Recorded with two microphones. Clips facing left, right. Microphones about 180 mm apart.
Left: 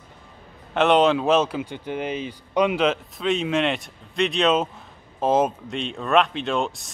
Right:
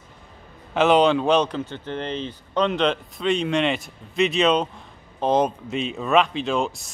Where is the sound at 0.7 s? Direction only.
Centre (ahead or behind).